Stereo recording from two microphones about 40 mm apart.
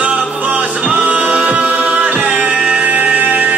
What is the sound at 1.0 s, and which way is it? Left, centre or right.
Music, right.